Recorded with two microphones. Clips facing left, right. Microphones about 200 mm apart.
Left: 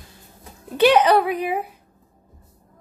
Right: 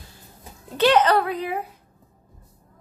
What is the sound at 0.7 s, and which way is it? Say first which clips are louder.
Speech: left 3 dB; 15° left (ahead or behind).